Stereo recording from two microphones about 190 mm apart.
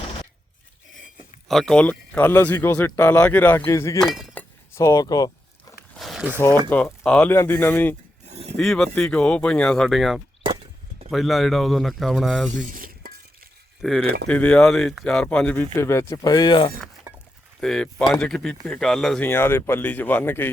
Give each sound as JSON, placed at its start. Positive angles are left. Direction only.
{"t": 1.5, "sound": "speech", "side_deg": 0}
{"t": 4.0, "sound": "chink", "side_deg": 0}
{"t": 4.7, "sound": "a sound", "side_deg": 15}
{"t": 5.9, "sound": "a sound", "side_deg": 0}
{"t": 6.7, "sound": "speech", "side_deg": 10}
{"t": 8.3, "sound": "a sound", "side_deg": -35}
{"t": 8.5, "sound": "speech", "side_deg": 5}
{"t": 12.5, "sound": "stir", "side_deg": -45}
{"t": 13.8, "sound": "speech", "side_deg": 0}
{"t": 17.6, "sound": "speech", "side_deg": 0}